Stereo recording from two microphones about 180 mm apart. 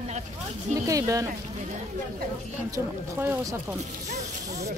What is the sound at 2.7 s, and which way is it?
Speech, 15° right (ahead or behind).